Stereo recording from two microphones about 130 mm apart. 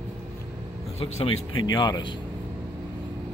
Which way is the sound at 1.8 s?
35° left (ahead or behind).